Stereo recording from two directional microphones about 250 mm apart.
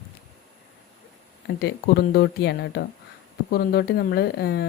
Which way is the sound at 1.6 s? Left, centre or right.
Left.